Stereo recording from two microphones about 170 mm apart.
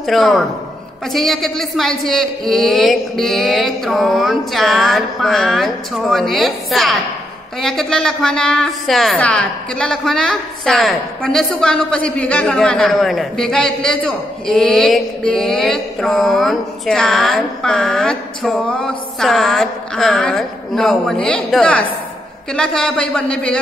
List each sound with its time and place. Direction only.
0.0 s a woman's voice: centre (ahead or behind)